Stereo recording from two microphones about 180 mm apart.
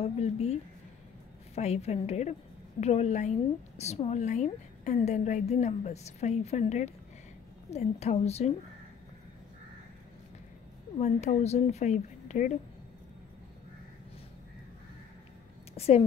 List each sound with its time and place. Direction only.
0.0 s a woman's voice: 35° left (ahead or behind)
11.0 s a woman's voice: 40° left (ahead or behind)
15.7 s a sound: 35° left (ahead or behind)